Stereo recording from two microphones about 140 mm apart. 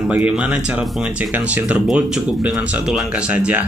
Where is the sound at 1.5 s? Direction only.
10° right (ahead or behind).